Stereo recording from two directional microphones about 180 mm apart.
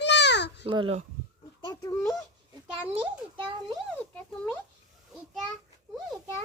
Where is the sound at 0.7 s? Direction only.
25° right (ahead or behind).